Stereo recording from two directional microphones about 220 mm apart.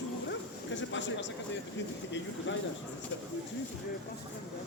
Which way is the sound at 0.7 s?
55° left (ahead or behind).